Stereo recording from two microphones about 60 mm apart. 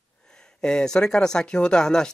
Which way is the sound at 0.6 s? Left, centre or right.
Centre.